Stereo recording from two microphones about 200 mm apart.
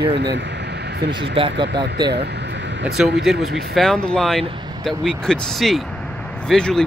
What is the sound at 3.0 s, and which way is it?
Speech, centre (ahead or behind).